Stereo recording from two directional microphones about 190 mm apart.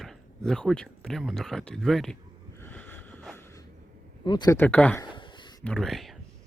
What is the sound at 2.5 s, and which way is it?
Snort, 10° left (ahead or behind).